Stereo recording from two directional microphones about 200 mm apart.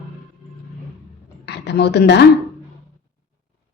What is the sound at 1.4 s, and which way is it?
Speech, 55° left (ahead or behind).